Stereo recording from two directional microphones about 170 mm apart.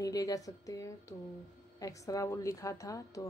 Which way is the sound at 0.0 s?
20° left (ahead or behind).